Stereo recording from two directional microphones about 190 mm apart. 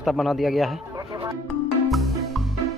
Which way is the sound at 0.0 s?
Centre (ahead or behind).